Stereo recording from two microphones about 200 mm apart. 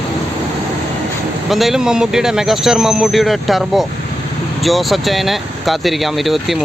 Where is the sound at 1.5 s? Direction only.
Centre (ahead or behind).